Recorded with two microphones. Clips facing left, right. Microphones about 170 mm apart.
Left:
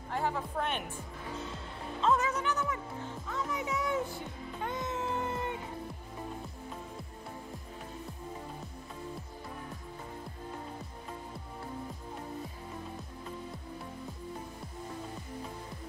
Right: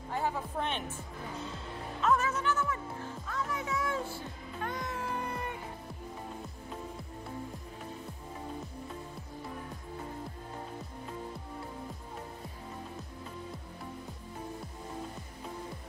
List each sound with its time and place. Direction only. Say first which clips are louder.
0.6 s speech: even; 10° left (ahead or behind)
2.0 s music: even; 20° left (ahead or behind)